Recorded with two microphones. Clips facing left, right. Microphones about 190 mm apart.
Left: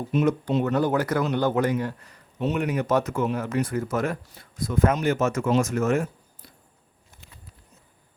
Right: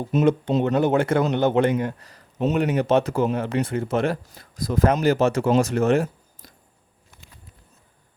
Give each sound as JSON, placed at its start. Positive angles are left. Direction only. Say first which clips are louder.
{"t": 0.3, "sound": "speech", "louder": "right 3 dB", "side_deg": -30}
{"t": 2.0, "sound": "speech", "louder": "right 4 dB", "side_deg": -35}
{"t": 2.6, "sound": "speech", "louder": "right 4 dB", "side_deg": -30}